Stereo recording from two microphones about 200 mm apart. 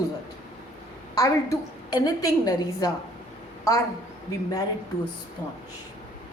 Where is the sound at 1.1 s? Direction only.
15° left (ahead or behind).